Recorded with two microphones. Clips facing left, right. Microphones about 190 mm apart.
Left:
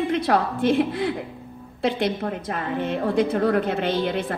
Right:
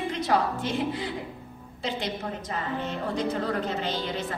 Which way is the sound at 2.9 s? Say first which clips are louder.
Left 9 dB; 55° left (ahead or behind).